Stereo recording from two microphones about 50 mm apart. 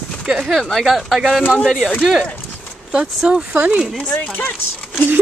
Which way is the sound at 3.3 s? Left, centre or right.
Right.